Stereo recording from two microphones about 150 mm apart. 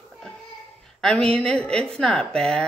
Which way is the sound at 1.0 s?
5° left (ahead or behind).